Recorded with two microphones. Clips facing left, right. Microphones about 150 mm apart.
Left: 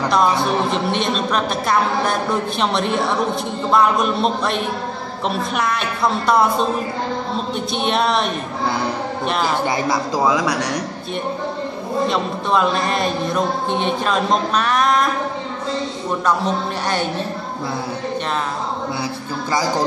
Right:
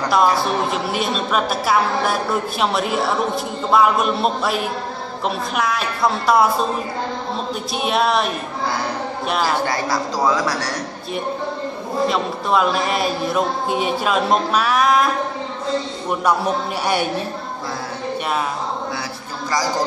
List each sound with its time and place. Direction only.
0.1 s a man's voice: 5° right (ahead or behind)
7.7 s a man's voice: 5° right (ahead or behind)
9.7 s a woman's voice: 15° left (ahead or behind)
12.1 s a man's voice: 5° right (ahead or behind)
16.1 s speech: 10° right (ahead or behind)